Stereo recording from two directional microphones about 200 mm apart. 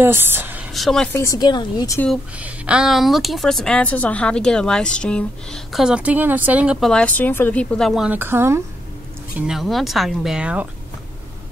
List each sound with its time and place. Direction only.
0.0 s a woman's voice: 10° right (ahead or behind)
1.1 s speech: 15° left (ahead or behind)
2.3 s speech: 5° right (ahead or behind)
9.5 s speech: centre (ahead or behind)